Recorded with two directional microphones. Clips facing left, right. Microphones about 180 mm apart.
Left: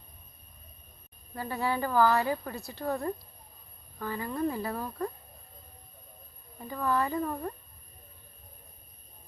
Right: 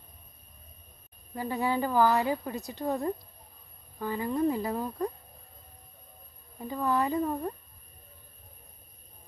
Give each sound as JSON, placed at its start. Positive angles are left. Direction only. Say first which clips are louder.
{"t": 1.4, "sound": "speech", "louder": "right 2 dB", "side_deg": -15}
{"t": 6.6, "sound": "speech", "louder": "right 1 dB", "side_deg": -15}